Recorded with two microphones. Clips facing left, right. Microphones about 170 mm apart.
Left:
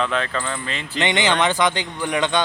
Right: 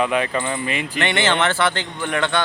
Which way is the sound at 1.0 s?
15° left (ahead or behind).